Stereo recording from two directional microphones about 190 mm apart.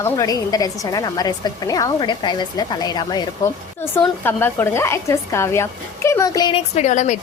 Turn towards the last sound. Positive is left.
turn(degrees=40)  # may be behind; listen again after turning